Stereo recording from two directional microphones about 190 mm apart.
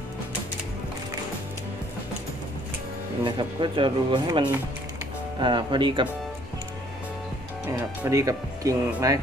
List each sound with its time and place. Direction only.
3.3 s speech: 25° right (ahead or behind)
8.0 s speech: 15° right (ahead or behind)